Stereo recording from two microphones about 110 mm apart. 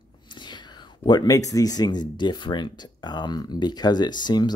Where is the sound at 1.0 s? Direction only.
35° left (ahead or behind).